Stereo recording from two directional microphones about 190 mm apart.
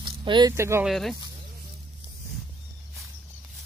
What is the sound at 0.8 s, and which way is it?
Speech, centre (ahead or behind).